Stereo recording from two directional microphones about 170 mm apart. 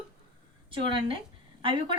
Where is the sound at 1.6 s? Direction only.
30° right (ahead or behind).